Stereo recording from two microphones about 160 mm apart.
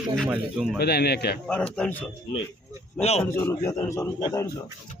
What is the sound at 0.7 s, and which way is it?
Speech, 90° left.